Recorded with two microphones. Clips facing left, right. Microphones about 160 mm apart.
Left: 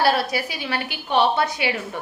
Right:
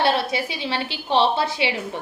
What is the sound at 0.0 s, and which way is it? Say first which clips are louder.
A woman's voice: left 1 dB; 25° right (ahead or behind).